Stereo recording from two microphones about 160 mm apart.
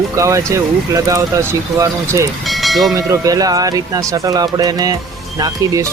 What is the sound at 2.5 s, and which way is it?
Speech, centre (ahead or behind).